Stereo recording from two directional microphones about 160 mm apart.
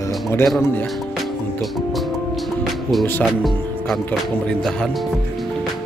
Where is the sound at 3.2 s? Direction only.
Centre (ahead or behind).